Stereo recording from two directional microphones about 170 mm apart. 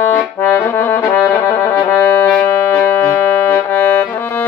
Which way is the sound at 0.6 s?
10° left (ahead or behind).